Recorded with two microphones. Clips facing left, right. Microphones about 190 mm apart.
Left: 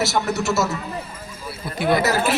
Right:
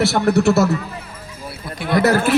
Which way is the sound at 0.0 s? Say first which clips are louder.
Right 7 dB; 60° right (ahead or behind).